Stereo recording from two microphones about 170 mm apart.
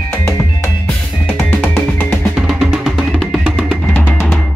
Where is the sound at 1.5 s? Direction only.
10° left (ahead or behind).